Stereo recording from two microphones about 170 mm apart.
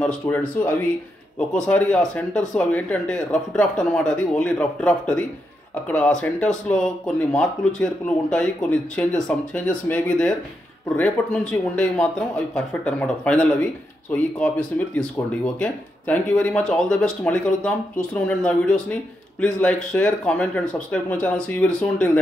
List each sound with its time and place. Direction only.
0.0 s speech: 5° left (ahead or behind)
11.7 s speech: 5° left (ahead or behind)